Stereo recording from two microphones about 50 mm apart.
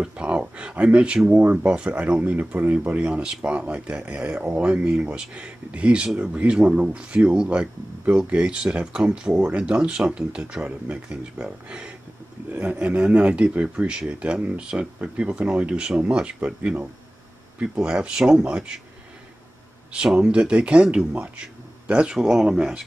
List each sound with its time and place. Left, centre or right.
0.0 s speech: right
3.1 s speech: right
17.6 s speech: centre
20.2 s speech: right